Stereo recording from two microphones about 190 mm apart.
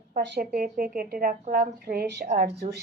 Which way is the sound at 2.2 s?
45° right (ahead or behind).